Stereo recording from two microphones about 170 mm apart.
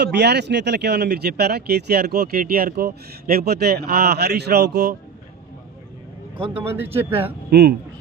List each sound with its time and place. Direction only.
0.0 s speech: 80° right
6.4 s a man's voice: 35° right (ahead or behind)
6.7 s speech: 10° right (ahead or behind)
7.4 s speech: 70° right (ahead or behind)